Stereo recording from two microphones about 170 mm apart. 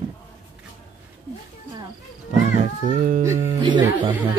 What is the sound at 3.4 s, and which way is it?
Speech, 30° right (ahead or behind).